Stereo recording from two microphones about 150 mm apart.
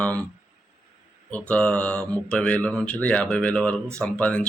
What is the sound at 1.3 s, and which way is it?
Speech, 10° left (ahead or behind).